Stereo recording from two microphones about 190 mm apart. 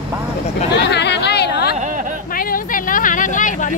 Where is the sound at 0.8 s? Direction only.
65° left (ahead or behind).